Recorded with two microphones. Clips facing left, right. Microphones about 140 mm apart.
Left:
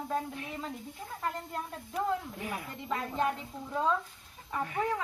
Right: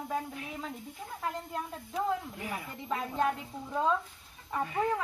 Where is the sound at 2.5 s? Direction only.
5° right (ahead or behind).